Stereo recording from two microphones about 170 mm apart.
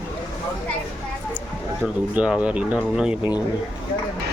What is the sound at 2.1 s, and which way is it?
Speech, 5° right (ahead or behind).